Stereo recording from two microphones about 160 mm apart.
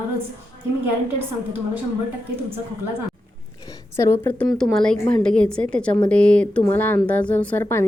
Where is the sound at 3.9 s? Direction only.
15° left (ahead or behind).